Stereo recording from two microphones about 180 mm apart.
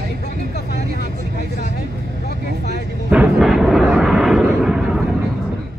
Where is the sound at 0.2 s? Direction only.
60° left (ahead or behind).